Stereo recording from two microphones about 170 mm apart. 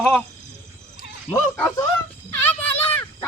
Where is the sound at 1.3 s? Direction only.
15° left (ahead or behind).